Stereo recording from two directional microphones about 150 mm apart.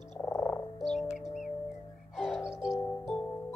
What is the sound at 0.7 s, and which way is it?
Music, centre (ahead or behind).